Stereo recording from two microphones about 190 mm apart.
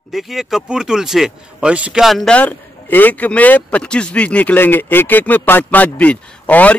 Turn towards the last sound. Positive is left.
turn(degrees=10)  # may be behind; listen again after turning